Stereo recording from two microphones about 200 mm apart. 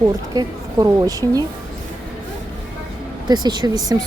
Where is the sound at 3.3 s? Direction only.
20° right (ahead or behind).